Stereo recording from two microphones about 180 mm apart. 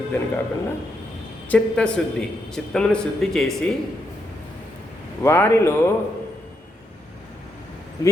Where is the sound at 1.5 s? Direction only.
5° left (ahead or behind).